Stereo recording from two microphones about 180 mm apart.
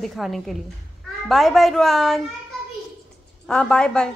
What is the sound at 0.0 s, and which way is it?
A woman's voice, centre (ahead or behind).